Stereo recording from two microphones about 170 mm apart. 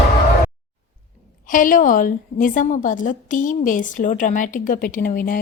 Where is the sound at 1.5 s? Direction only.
50° left (ahead or behind).